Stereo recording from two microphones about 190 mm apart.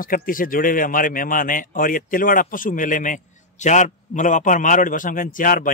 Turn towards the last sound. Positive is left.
turn(degrees=45)  # may be behind; listen again after turning